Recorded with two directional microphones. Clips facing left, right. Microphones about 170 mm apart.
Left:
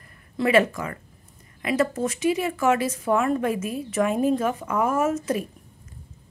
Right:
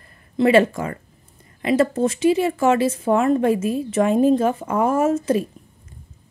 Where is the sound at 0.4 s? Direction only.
30° right (ahead or behind).